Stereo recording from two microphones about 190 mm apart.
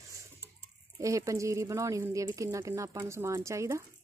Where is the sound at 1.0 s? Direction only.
15° right (ahead or behind).